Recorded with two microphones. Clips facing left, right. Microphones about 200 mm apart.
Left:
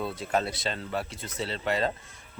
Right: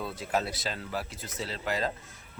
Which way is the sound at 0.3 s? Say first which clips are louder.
Left 2 dB; centre (ahead or behind).